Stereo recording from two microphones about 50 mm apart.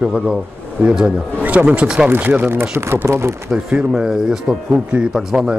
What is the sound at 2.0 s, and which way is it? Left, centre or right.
Speech, right.